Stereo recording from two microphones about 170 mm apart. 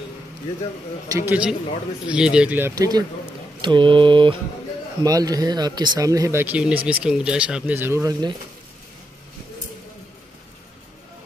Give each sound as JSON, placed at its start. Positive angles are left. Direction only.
{"t": 1.0, "sound": "speech", "side_deg": -10}